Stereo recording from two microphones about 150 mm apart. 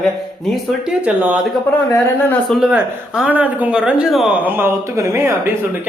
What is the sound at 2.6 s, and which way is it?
A man's voice, 5° right (ahead or behind).